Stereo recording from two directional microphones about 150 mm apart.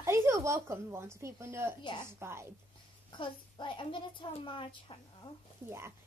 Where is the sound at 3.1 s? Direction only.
35° left (ahead or behind).